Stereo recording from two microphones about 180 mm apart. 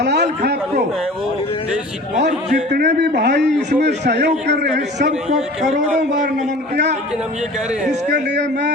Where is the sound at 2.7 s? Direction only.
65° right (ahead or behind).